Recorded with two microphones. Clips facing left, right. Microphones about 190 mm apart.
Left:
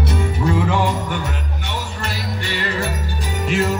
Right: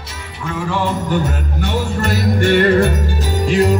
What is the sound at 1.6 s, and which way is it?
Music, 45° right (ahead or behind).